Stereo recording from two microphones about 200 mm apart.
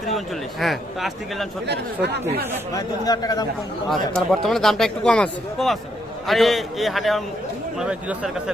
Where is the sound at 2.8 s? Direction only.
20° left (ahead or behind).